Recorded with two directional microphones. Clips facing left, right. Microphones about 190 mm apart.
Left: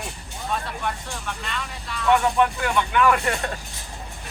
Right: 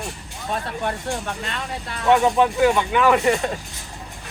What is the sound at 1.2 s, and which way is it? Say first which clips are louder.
Speech: right 3 dB; 50° right (ahead or behind).